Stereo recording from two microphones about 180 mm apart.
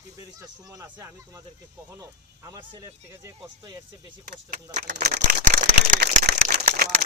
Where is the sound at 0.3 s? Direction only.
20° right (ahead or behind).